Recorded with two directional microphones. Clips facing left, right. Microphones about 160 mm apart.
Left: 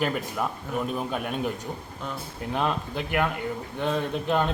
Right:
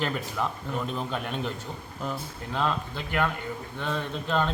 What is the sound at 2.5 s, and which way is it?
A man's voice, 15° left (ahead or behind).